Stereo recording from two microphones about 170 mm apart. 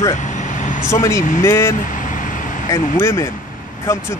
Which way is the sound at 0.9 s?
15° left (ahead or behind).